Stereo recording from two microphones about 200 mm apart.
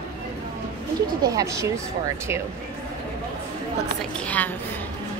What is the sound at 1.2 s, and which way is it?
Speech, 15° right (ahead or behind).